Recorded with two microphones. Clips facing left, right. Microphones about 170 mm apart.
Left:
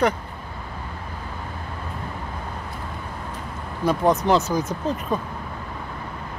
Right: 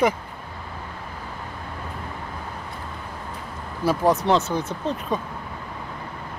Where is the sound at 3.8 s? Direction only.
5° right (ahead or behind).